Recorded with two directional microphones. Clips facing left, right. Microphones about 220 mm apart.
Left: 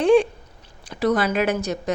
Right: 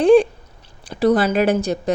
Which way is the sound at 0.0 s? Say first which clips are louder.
Right 4 dB; 35° right (ahead or behind).